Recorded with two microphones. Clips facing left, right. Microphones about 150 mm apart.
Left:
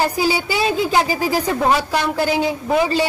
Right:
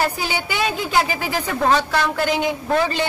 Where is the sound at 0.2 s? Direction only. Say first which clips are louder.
Left 5 dB; 35° left (ahead or behind).